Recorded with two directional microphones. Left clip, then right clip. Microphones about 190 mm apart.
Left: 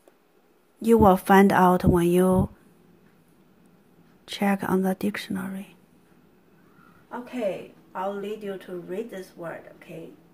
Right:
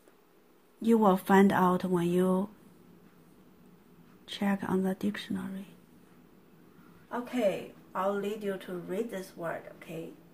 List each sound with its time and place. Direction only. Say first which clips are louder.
0.8 s speech: left 8 dB; 25° left (ahead or behind)
4.3 s speech: left 7 dB; 25° left (ahead or behind)
7.1 s speech: left 1 dB; 10° left (ahead or behind)